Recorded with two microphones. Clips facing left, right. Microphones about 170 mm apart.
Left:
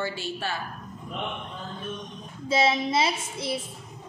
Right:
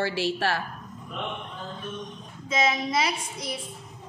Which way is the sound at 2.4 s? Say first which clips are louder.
Left 2 dB; 30° left (ahead or behind).